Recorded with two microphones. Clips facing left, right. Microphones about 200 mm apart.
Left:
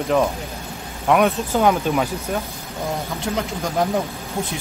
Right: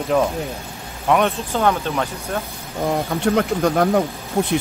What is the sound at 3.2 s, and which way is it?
Speech, 60° right (ahead or behind).